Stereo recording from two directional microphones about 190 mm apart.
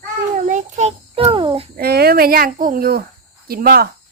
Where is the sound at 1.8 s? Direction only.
55° right (ahead or behind).